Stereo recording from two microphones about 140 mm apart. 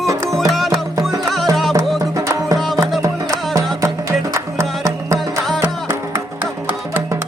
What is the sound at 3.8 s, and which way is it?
Music, 20° right (ahead or behind).